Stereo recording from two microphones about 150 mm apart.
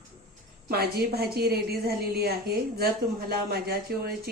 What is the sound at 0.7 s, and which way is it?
A woman's voice, 90° right.